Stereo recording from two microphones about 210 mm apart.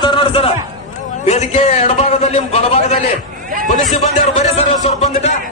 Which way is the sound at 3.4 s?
40° right (ahead or behind).